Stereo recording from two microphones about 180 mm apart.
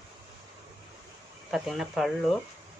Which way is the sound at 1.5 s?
Centre (ahead or behind).